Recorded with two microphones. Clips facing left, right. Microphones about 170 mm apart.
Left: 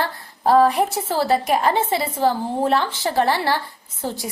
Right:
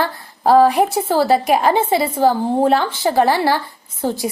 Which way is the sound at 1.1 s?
30° right (ahead or behind).